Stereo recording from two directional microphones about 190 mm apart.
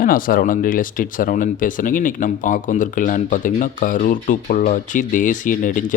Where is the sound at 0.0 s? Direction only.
50° left (ahead or behind).